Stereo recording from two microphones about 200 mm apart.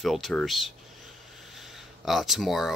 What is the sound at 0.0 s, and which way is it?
Speech, centre (ahead or behind).